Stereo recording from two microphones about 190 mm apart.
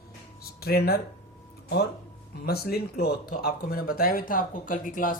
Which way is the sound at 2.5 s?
55° left (ahead or behind).